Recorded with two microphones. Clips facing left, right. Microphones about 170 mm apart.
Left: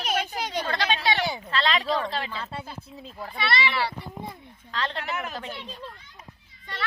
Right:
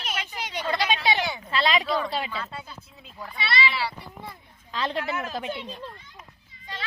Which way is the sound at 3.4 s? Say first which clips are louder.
Left 1 dB; 55° left (ahead or behind).